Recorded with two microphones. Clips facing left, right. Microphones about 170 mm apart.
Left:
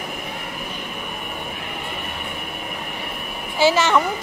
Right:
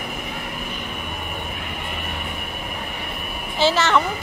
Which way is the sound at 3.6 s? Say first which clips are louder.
Left 2 dB; 10° left (ahead or behind).